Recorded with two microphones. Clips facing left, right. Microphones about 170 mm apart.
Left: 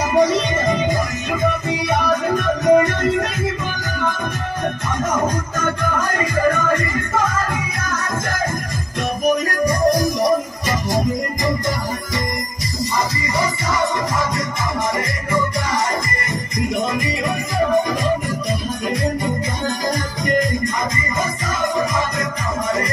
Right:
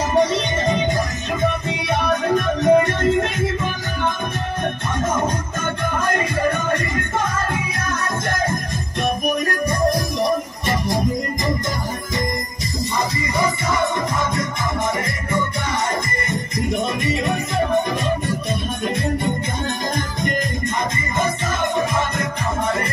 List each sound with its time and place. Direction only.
2.6 s music: 25° right (ahead or behind)
5.1 s music: 25° right (ahead or behind)
9.5 s music: 25° right (ahead or behind)